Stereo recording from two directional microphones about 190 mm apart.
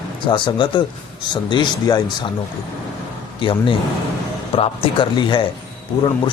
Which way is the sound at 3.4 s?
25° left (ahead or behind).